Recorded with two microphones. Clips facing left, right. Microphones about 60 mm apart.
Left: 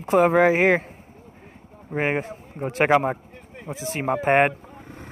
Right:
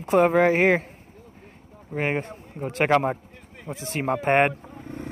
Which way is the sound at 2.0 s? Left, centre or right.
Centre.